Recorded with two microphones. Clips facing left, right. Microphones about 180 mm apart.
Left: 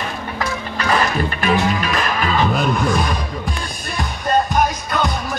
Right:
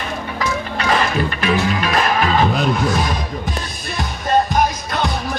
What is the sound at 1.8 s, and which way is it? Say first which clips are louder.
Music: right 3 dB; 45° right (ahead or behind).